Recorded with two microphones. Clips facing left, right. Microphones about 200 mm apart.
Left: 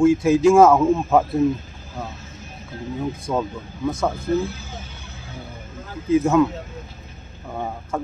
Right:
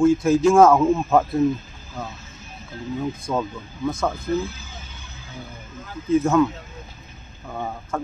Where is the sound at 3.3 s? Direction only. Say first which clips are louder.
Left 1 dB; 10° left (ahead or behind).